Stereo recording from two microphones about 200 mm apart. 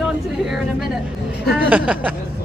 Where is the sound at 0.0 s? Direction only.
Centre (ahead or behind).